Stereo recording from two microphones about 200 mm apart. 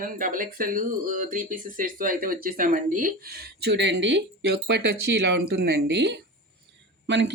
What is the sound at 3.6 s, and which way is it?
Speech, 60° right (ahead or behind).